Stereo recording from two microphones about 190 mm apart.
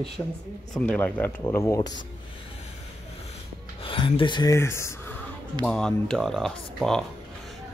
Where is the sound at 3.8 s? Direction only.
25° left (ahead or behind).